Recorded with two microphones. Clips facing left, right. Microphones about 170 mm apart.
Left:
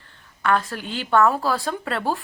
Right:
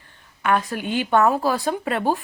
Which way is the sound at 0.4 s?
15° right (ahead or behind).